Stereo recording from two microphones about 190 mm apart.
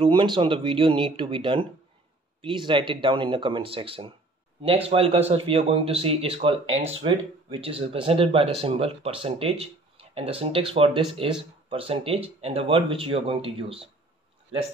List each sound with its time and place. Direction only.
0.0 s speech: 25° right (ahead or behind)